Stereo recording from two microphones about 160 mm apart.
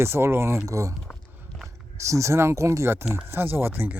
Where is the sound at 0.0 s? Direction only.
15° right (ahead or behind).